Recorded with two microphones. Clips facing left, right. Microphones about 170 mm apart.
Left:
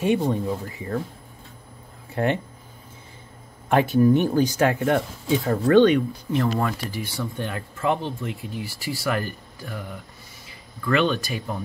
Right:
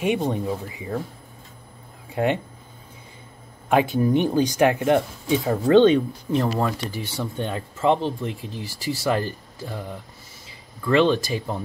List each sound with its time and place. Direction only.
0.0 s speech: 15° right (ahead or behind)
2.1 s speech: 15° right (ahead or behind)
3.7 s speech: 15° right (ahead or behind)
6.5 s speech: centre (ahead or behind)
6.9 s speech: 25° right (ahead or behind)
10.9 s speech: 30° right (ahead or behind)